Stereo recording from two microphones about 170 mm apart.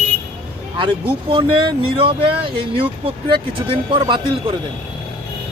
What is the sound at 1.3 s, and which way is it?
Speech, 30° right (ahead or behind).